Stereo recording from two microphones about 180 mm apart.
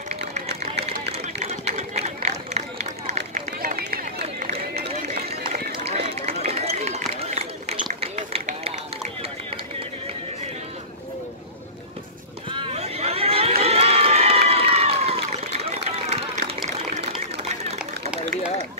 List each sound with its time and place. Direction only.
0.8 s run: 35° right (ahead or behind); by 4.5 s 50° right (ahead or behind)
4.5 s run: 40° right (ahead or behind)
12.4 s a sound: 35° right (ahead or behind)
13.6 s run: 35° right (ahead or behind)